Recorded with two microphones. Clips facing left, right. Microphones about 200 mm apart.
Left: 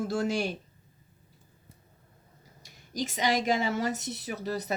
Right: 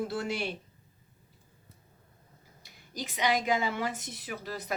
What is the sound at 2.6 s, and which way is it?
Speech, 45° left (ahead or behind).